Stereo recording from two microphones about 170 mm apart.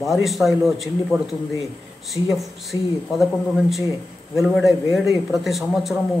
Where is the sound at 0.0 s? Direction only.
Centre (ahead or behind).